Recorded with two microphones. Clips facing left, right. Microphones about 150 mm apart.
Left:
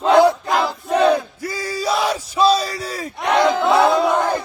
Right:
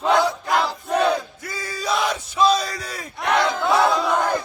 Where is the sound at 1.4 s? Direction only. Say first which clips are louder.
Left 4 dB; 35° left (ahead or behind).